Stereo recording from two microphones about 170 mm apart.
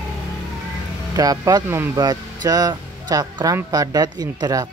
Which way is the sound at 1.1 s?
20° right (ahead or behind).